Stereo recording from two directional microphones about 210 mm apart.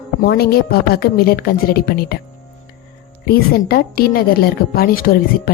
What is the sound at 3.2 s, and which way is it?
Speech, 45° left (ahead or behind).